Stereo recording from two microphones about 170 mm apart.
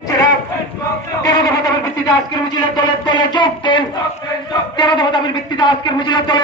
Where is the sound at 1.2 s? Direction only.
20° left (ahead or behind).